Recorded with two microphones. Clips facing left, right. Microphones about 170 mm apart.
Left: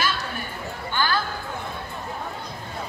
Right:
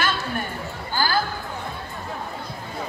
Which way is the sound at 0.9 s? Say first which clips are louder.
Right 1 dB; 35° right (ahead or behind).